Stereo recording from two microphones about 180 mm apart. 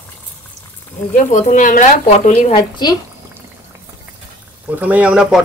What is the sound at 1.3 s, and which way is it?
Speech, 45° left (ahead or behind).